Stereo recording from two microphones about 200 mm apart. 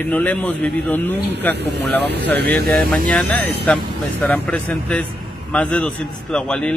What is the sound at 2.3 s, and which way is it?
Speech, 55° right (ahead or behind).